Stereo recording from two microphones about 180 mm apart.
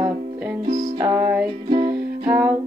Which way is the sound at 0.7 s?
50° right (ahead or behind).